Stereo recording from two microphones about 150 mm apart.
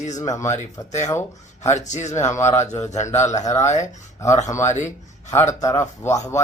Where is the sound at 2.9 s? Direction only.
50° left (ahead or behind).